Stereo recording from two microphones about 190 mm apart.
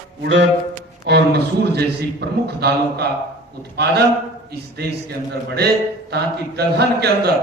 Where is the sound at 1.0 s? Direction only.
60° right (ahead or behind).